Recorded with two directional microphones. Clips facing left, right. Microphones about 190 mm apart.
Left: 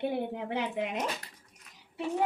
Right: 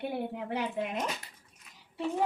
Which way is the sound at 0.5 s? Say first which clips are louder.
Left 1 dB; 20° left (ahead or behind).